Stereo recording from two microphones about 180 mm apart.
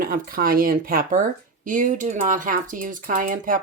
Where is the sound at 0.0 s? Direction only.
50° right (ahead or behind).